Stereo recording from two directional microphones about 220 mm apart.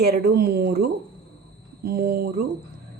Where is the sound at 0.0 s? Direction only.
45° right (ahead or behind).